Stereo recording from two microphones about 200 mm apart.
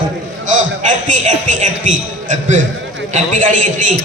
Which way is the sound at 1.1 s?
40° right (ahead or behind).